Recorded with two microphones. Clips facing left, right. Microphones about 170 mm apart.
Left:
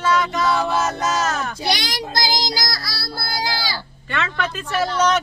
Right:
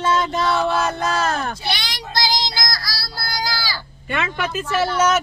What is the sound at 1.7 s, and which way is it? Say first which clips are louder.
Speech: left 3 dB; 45° left (ahead or behind).